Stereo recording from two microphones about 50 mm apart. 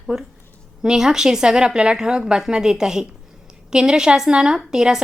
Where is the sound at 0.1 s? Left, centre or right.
Centre.